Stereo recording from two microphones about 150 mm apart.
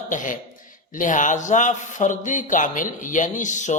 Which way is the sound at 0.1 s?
60° left (ahead or behind).